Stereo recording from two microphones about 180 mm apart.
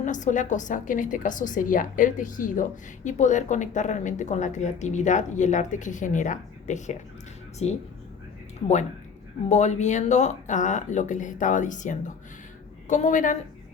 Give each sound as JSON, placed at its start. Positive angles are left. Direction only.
{"t": 0.0, "sound": "a woman's voice", "side_deg": 45}